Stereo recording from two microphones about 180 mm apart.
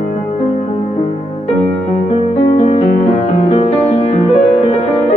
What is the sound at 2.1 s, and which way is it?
Music, 35° left (ahead or behind).